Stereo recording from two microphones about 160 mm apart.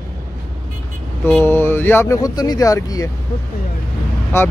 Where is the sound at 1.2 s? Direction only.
15° left (ahead or behind).